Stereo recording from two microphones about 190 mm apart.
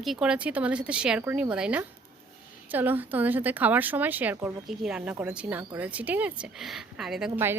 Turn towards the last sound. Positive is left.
turn(degrees=-10)  # may be behind; listen again after turning